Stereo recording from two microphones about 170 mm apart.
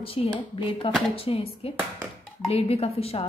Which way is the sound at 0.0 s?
35° left (ahead or behind).